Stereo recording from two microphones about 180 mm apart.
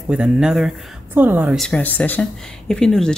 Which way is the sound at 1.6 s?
5° left (ahead or behind).